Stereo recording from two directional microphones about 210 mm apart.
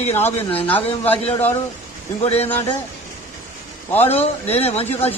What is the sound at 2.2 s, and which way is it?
Speech, 30° left (ahead or behind).